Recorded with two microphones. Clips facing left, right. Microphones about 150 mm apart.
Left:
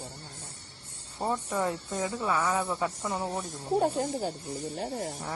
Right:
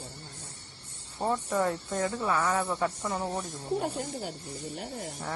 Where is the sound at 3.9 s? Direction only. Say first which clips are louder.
Left 5 dB; 45° left (ahead or behind).